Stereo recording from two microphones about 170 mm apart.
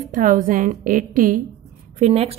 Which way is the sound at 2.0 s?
35° right (ahead or behind).